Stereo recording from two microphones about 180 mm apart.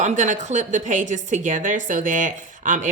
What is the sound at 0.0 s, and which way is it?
A woman's voice, 40° right (ahead or behind).